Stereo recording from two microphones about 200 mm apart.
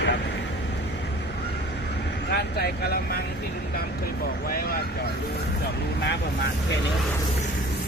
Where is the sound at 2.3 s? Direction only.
50° left (ahead or behind).